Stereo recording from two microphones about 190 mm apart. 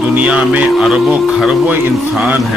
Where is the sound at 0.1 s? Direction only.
5° right (ahead or behind).